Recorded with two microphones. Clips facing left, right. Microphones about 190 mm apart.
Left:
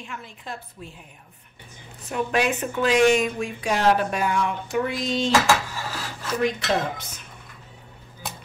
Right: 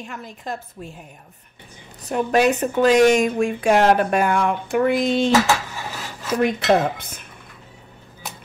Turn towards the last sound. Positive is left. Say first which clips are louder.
# right 6 dB
turn(degrees=-55)  # may be behind; listen again after turning